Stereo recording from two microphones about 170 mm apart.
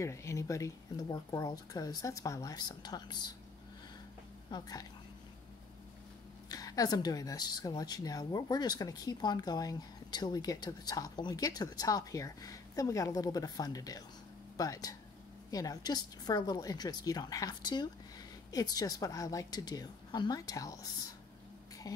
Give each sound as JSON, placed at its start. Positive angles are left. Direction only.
{"t": 0.0, "sound": "speech", "side_deg": 15}
{"t": 4.5, "sound": "speech", "side_deg": 25}
{"t": 6.5, "sound": "speech", "side_deg": 20}
{"t": 21.8, "sound": "music", "side_deg": 20}